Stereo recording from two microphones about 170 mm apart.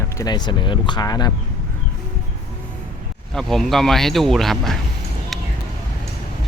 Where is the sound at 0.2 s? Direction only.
25° left (ahead or behind).